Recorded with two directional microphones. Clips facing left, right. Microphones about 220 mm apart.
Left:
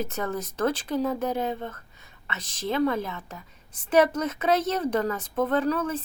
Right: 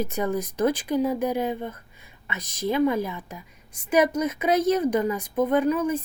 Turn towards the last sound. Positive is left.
turn(degrees=-10)  # may be behind; listen again after turning